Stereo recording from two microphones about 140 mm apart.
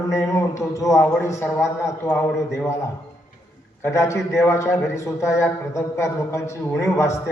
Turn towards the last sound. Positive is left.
turn(degrees=20)  # may be behind; listen again after turning